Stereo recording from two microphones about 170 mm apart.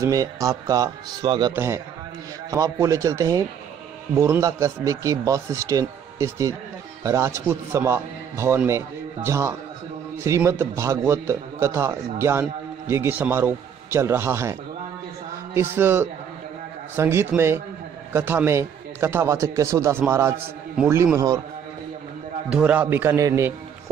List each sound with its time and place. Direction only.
0.0 s a man's voice: 20° right (ahead or behind)
1.5 s a man's voice: 15° right (ahead or behind)
22.5 s a man's voice: 10° right (ahead or behind)